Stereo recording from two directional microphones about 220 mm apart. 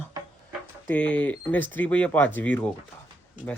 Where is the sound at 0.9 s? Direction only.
5° left (ahead or behind).